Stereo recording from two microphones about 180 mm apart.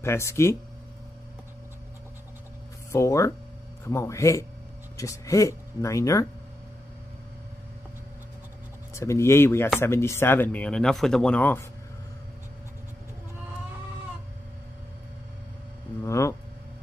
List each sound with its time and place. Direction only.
0.0 s speech: 15° left (ahead or behind)
2.9 s speech: 15° left (ahead or behind)
8.9 s speech: 15° left (ahead or behind)
16.0 s a sound: 15° left (ahead or behind)